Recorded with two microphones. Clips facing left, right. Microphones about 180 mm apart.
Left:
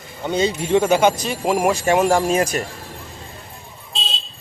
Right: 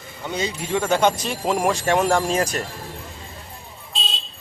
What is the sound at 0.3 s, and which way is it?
Speech, 25° left (ahead or behind).